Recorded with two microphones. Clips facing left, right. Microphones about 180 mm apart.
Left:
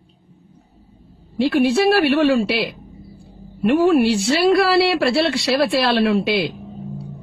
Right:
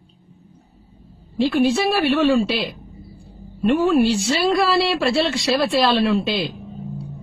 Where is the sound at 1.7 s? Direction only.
60° left (ahead or behind).